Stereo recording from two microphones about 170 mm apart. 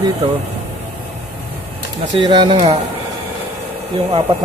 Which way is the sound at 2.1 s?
30° right (ahead or behind).